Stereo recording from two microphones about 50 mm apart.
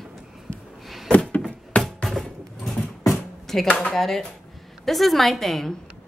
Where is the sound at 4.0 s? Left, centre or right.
Centre.